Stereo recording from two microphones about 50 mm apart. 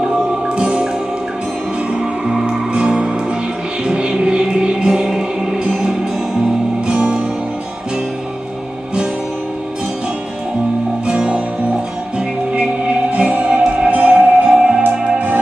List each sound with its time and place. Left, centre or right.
0.0 s music: centre
2.0 s music: centre
11.1 s music: centre
14.8 s music: right